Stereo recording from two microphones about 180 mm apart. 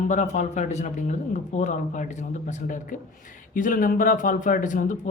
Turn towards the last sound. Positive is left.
turn(degrees=45)  # may be behind; listen again after turning